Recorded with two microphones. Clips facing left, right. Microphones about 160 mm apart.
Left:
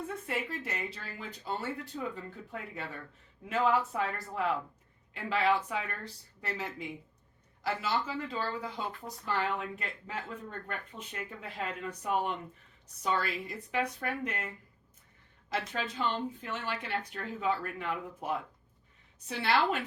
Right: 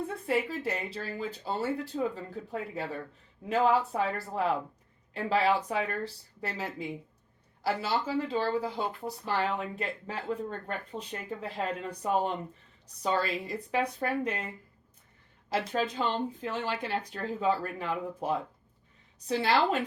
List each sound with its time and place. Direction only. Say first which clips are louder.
0.3 s speech: right 10 dB; 35° right (ahead or behind)
7.6 s speech: right 3 dB; 35° right (ahead or behind)
15.4 s speech: right 5 dB; 35° right (ahead or behind)